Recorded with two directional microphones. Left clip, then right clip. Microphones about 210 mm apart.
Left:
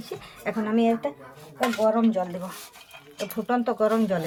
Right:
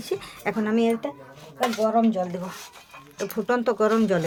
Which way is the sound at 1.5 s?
30° right (ahead or behind).